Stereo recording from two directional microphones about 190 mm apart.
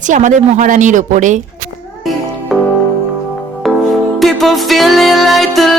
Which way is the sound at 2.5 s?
Centre (ahead or behind).